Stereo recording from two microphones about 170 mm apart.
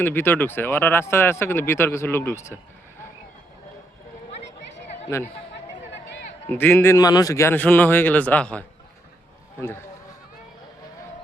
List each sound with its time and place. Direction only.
0.0 s speech: 10° left (ahead or behind)
5.1 s speech: 20° left (ahead or behind)
6.5 s speech: 10° left (ahead or behind)